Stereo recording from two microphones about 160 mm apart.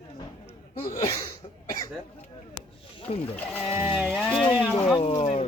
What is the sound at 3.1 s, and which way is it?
Speech, 35° left (ahead or behind).